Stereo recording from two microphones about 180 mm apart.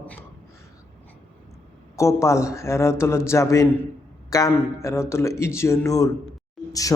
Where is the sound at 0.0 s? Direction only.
10° left (ahead or behind).